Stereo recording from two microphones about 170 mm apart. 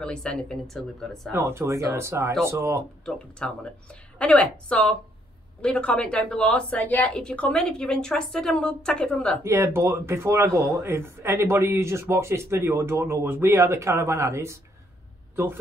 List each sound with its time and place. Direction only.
0.0 s a woman's voice: 5° left (ahead or behind)
1.3 s speech: 15° right (ahead or behind)
3.1 s a woman's voice: 5° left (ahead or behind)
9.4 s speech: 15° right (ahead or behind)